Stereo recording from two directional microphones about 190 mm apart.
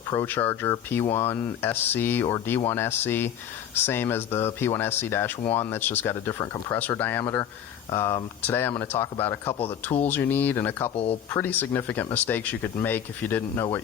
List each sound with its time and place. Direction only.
0.1 s speech: 15° left (ahead or behind)
2.2 s speech: 20° left (ahead or behind)
9.5 s speech: 30° left (ahead or behind)
10.0 s speech: 10° left (ahead or behind)
10.9 s speech: 30° left (ahead or behind)
11.3 s speech: 10° left (ahead or behind)